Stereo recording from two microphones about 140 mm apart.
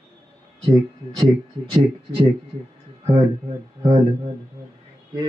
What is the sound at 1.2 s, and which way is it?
Speech, 35° right (ahead or behind).